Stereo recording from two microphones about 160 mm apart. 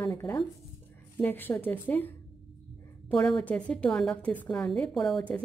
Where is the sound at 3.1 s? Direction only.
5° left (ahead or behind).